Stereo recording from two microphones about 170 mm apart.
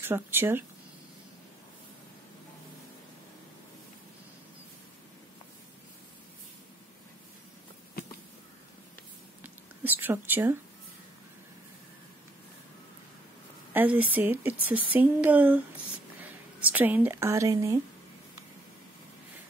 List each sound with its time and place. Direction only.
0.0 s speech: 15° right (ahead or behind)
9.4 s a sound: 10° right (ahead or behind)
13.7 s speech: 10° right (ahead or behind)